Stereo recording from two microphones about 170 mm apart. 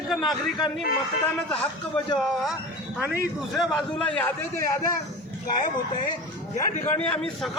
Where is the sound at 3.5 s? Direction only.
Centre (ahead or behind).